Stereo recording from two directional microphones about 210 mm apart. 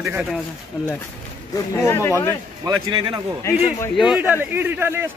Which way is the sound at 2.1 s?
15° right (ahead or behind).